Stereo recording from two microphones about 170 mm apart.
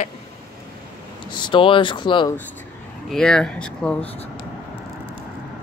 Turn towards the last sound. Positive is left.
turn(degrees=5)  # may be behind; listen again after turning